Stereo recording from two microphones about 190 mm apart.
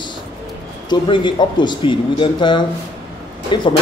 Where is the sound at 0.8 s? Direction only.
25° left (ahead or behind).